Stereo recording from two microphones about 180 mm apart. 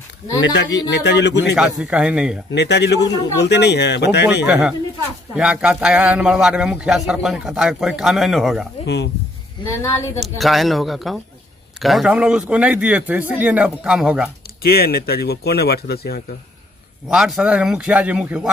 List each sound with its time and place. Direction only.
0.4 s a man's voice: 80° left
1.5 s a man's voice: 5° right (ahead or behind)
2.5 s a man's voice: 70° left (ahead or behind)
4.5 s a man's voice: 5° right (ahead or behind)
8.8 s a man's voice: 75° left (ahead or behind)
9.8 s a woman's voice: 15° left (ahead or behind)
10.2 s a man's voice: centre (ahead or behind)
14.6 s speech: 60° left (ahead or behind)
17.1 s a man's voice: 5° right (ahead or behind)